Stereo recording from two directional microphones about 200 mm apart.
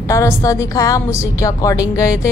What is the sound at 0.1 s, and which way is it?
A woman's voice, 15° left (ahead or behind).